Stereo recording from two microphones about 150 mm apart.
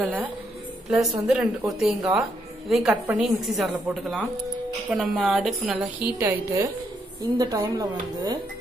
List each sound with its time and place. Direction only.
0.0 s a woman's voice: 10° right (ahead or behind)
6.1 s speech: 20° right (ahead or behind)